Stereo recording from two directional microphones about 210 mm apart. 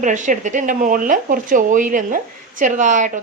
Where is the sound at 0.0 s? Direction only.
35° right (ahead or behind).